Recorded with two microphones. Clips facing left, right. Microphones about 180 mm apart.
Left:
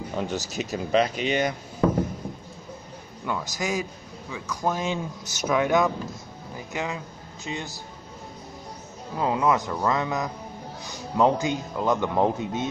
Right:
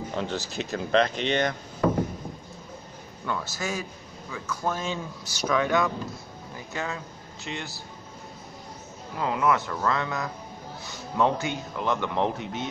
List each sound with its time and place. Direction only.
0.1 s speech: 10° left (ahead or behind)
3.3 s speech: 15° left (ahead or behind)
9.1 s speech: 25° left (ahead or behind)